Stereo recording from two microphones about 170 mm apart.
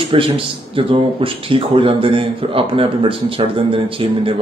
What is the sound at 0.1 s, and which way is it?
A man's voice, 30° right (ahead or behind).